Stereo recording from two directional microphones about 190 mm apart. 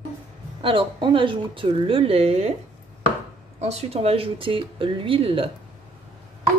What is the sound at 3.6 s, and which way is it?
A child's voice, 35° right (ahead or behind).